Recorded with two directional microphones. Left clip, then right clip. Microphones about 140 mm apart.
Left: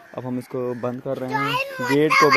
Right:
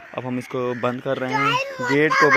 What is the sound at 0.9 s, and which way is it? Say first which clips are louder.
Speech: right 2 dB; 30° right (ahead or behind).